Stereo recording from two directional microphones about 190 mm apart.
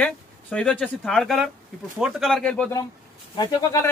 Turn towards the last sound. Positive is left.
turn(degrees=20)  # may be behind; listen again after turning